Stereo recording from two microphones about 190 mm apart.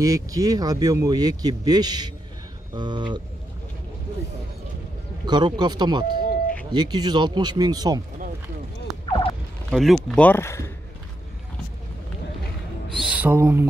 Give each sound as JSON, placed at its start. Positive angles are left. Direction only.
{"t": 0.0, "sound": "speech", "side_deg": -20}
{"t": 5.2, "sound": "speech", "side_deg": -20}
{"t": 6.0, "sound": "a sound", "side_deg": 50}
{"t": 6.7, "sound": "speech", "side_deg": -20}
{"t": 9.7, "sound": "speech", "side_deg": 0}
{"t": 12.9, "sound": "a sound", "side_deg": -5}